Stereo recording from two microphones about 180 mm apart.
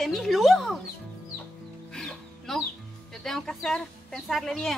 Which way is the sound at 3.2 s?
Centre (ahead or behind).